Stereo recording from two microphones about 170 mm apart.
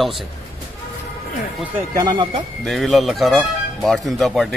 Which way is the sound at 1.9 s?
25° right (ahead or behind).